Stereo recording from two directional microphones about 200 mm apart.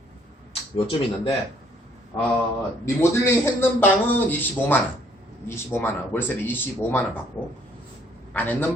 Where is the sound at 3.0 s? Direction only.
15° left (ahead or behind).